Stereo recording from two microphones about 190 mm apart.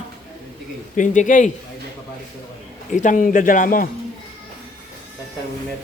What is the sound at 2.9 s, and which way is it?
Speech, 40° left (ahead or behind).